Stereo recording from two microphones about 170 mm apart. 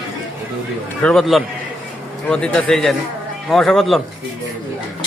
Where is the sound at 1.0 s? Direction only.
Centre (ahead or behind).